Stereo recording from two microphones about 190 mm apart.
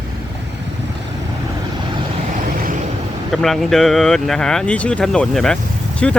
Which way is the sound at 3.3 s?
Centre (ahead or behind).